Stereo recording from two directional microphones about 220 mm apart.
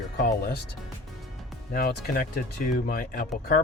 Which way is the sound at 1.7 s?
40° left (ahead or behind).